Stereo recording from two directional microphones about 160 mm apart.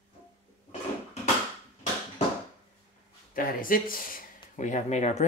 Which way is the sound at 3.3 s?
60° left (ahead or behind).